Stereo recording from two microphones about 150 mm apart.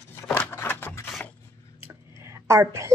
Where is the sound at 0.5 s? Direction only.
15° left (ahead or behind).